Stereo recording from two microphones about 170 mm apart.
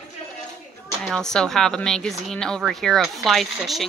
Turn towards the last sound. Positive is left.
turn(degrees=0)  # may be behind; listen again after turning